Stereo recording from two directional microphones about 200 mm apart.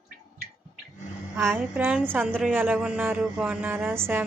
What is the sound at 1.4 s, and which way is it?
A man's voice, 10° right (ahead or behind).